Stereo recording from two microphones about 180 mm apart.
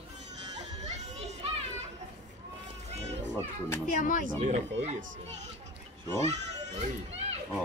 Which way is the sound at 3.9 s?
45° left (ahead or behind).